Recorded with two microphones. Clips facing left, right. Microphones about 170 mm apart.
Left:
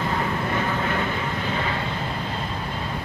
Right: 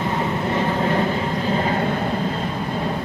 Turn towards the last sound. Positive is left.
turn(degrees=-40)  # may be behind; listen again after turning